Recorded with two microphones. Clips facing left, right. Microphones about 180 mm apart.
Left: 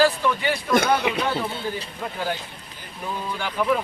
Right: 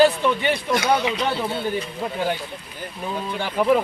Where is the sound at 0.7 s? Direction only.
55° left (ahead or behind).